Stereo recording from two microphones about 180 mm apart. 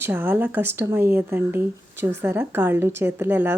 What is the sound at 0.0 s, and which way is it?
A woman's voice, 10° right (ahead or behind).